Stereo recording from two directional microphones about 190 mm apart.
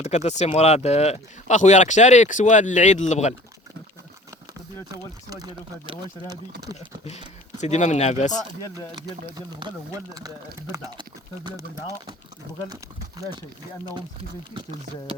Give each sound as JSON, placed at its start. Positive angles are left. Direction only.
{"t": 0.0, "sound": "speech", "side_deg": 35}
{"t": 4.9, "sound": "speech", "side_deg": -20}
{"t": 7.6, "sound": "speech", "side_deg": 40}
{"t": 9.0, "sound": "speech", "side_deg": -20}
{"t": 12.6, "sound": "speech", "side_deg": -20}